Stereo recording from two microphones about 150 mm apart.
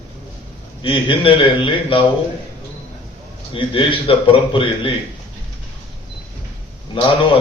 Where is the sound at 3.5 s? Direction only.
35° left (ahead or behind).